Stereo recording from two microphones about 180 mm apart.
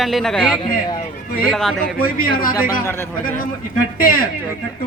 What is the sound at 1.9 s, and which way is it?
Speech, 55° left (ahead or behind).